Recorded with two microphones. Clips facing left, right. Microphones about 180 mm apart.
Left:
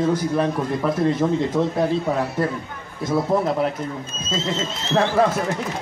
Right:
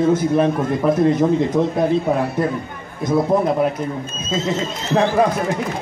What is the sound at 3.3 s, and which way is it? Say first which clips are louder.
Speech: right 2 dB; 20° right (ahead or behind).